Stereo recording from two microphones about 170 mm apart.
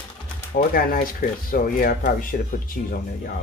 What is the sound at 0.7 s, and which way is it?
Speech, 55° left (ahead or behind).